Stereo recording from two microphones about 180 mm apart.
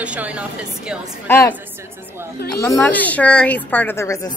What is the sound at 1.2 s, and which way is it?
Speech, 15° left (ahead or behind).